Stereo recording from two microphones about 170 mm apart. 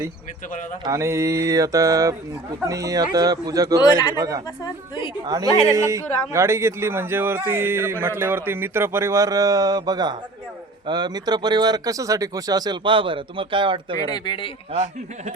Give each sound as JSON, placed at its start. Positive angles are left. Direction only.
{"t": 0.9, "sound": "speech", "side_deg": -15}
{"t": 3.8, "sound": "a woman's voice", "side_deg": 25}
{"t": 4.1, "sound": "speech", "side_deg": -20}
{"t": 4.6, "sound": "a woman's voice", "side_deg": 30}
{"t": 5.2, "sound": "speech", "side_deg": -20}
{"t": 14.1, "sound": "a woman's voice", "side_deg": 30}
{"t": 14.7, "sound": "a man's voice", "side_deg": -35}